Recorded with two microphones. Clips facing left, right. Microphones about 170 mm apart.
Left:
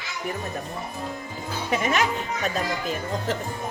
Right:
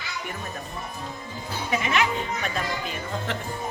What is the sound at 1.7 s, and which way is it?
Speech, 40° left (ahead or behind).